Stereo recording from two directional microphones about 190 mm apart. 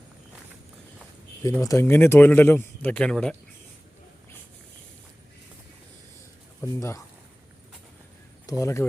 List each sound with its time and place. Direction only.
1.5 s speech: 15° left (ahead or behind)
6.6 s speech: 15° left (ahead or behind)
8.4 s speech: 15° left (ahead or behind)